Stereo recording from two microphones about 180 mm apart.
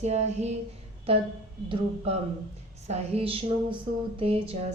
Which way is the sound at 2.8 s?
35° right (ahead or behind).